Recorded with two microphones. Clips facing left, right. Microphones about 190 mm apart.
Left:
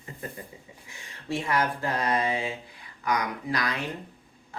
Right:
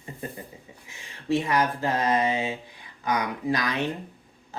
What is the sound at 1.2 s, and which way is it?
Speech, 20° right (ahead or behind).